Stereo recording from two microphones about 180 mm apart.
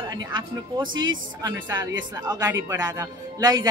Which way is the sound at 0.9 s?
90° right.